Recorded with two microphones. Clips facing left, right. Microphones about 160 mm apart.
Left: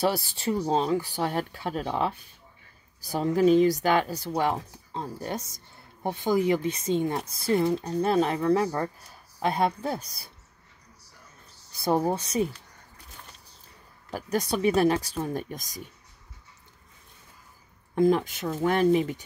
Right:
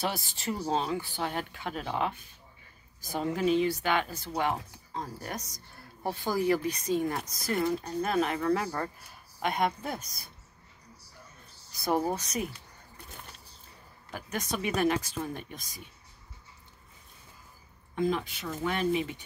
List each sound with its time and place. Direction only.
0.0 s speech: 35° left (ahead or behind)
11.7 s speech: 30° left (ahead or behind)
14.1 s speech: 35° left (ahead or behind)
17.9 s speech: 45° left (ahead or behind)